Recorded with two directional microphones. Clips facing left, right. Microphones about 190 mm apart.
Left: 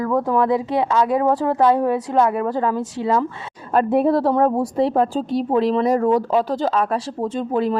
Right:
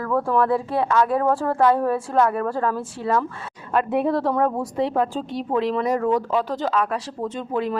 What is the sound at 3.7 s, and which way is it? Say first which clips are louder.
A woman's voice: left 4 dB; 40° left (ahead or behind).